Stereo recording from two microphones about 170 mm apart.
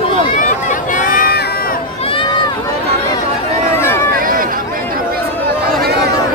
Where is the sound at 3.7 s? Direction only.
15° left (ahead or behind).